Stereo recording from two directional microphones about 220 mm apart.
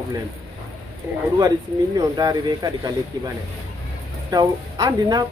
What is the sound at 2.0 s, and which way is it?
Speech, 15° right (ahead or behind).